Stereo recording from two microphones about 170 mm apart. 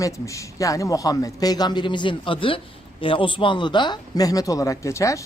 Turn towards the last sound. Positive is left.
turn(degrees=15)  # may be behind; listen again after turning